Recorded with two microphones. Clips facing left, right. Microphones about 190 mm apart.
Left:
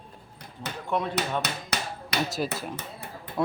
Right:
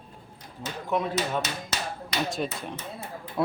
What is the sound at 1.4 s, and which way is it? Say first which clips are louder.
Hammer: even; 65° left (ahead or behind).